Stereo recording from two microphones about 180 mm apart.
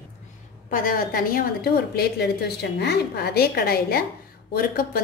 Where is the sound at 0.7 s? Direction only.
50° left (ahead or behind).